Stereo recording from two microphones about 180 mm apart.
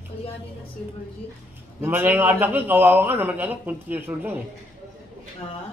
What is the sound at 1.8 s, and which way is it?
A man's voice, 10° right (ahead or behind).